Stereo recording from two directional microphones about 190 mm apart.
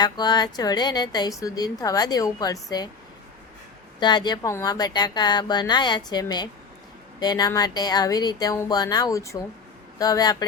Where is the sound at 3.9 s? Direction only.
25° left (ahead or behind).